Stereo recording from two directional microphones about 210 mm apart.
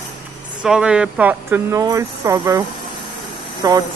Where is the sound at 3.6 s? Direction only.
15° right (ahead or behind).